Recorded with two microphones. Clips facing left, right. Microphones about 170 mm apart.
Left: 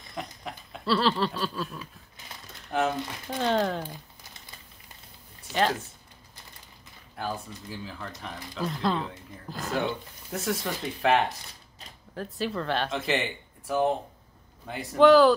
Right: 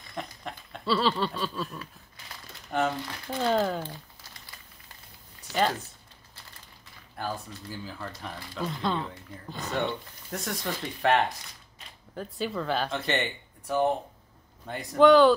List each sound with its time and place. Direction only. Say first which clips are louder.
0.1 s dog: even; centre (ahead or behind)
2.7 s speech: left 1 dB; centre (ahead or behind)
3.8 s crumpling: even; 15° left (ahead or behind)
5.5 s speech: left 1 dB; centre (ahead or behind)
7.2 s speech: left 1 dB; centre (ahead or behind)